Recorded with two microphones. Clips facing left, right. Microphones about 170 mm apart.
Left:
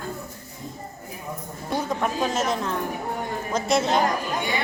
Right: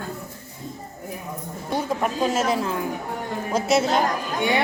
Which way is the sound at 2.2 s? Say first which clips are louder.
Right 3 dB; 5° right (ahead or behind).